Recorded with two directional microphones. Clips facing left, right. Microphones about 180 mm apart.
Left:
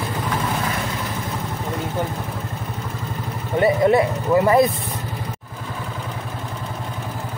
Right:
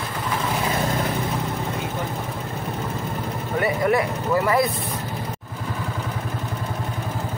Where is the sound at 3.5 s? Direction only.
25° left (ahead or behind).